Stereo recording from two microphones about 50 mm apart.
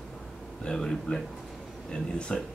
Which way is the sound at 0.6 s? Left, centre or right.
Centre.